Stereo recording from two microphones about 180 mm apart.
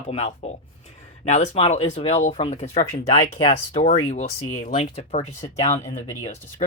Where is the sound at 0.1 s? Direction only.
35° left (ahead or behind).